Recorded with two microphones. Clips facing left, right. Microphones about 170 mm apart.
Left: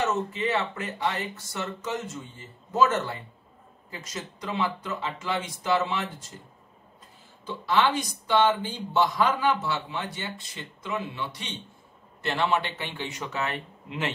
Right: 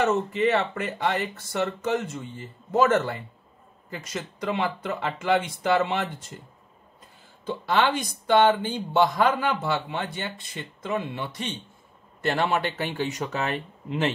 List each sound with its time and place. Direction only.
0.0 s speech: 60° right (ahead or behind)
7.4 s speech: 55° right (ahead or behind); by 14.1 s 35° right (ahead or behind)